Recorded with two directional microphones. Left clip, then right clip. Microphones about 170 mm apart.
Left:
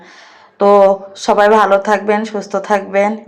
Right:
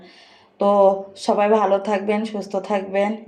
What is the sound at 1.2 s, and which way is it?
Speech, 10° left (ahead or behind).